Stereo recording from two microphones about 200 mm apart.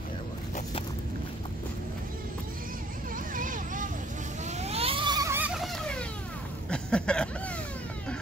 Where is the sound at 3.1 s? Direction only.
40° right (ahead or behind); by 5.5 s 15° right (ahead or behind).